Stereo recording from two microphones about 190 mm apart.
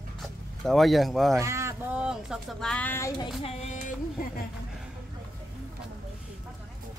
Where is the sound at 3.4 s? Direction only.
35° left (ahead or behind).